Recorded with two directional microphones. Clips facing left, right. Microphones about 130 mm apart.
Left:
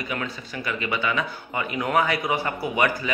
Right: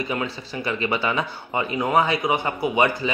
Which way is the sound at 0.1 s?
30° right (ahead or behind).